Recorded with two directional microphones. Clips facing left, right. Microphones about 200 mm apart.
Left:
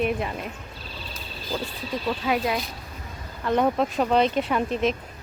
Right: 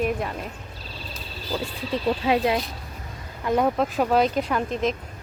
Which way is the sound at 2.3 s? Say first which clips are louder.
Right 3 dB; 25° right (ahead or behind).